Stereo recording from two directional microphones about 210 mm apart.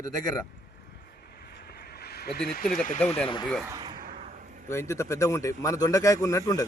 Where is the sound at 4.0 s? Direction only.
35° right (ahead or behind).